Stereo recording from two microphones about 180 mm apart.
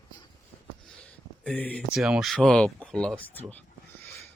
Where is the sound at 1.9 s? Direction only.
5° right (ahead or behind).